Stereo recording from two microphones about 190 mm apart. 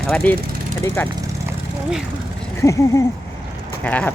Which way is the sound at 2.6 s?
15° left (ahead or behind).